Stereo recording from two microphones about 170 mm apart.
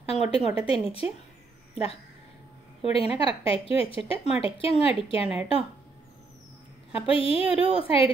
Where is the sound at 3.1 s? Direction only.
30° left (ahead or behind).